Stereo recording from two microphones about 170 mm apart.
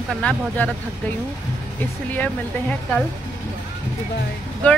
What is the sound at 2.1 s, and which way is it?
Speech, 10° left (ahead or behind).